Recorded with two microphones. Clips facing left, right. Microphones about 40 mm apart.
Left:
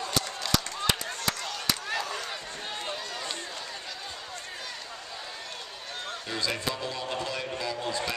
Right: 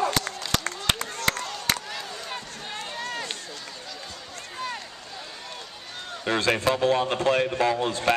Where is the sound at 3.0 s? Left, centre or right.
Right.